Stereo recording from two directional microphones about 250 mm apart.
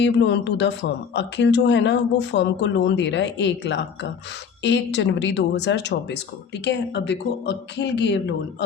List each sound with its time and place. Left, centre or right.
0.0 s speech: left